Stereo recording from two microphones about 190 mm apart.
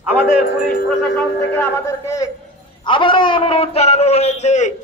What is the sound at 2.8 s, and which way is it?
A man's voice, 25° left (ahead or behind).